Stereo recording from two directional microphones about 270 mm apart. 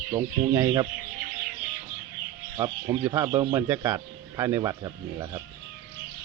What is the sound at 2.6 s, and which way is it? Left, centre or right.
A man's voice, centre.